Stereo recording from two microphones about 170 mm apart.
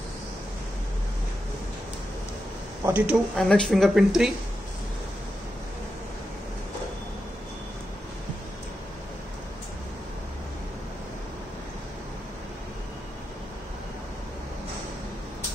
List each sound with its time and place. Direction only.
2.8 s speech: 10° right (ahead or behind)
3.3 s speech: 5° left (ahead or behind)